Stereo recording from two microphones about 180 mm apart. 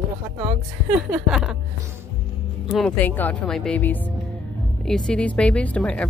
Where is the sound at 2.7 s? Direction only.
10° left (ahead or behind).